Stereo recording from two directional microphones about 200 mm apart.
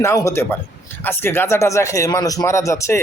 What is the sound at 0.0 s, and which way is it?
Speech, 15° left (ahead or behind).